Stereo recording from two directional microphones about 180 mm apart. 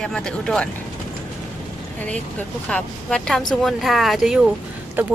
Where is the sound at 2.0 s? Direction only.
5° left (ahead or behind).